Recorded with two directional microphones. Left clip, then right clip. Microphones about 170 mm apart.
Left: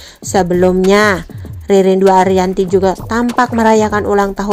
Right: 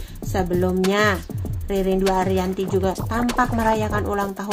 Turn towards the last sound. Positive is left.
turn(degrees=45)  # may be behind; listen again after turning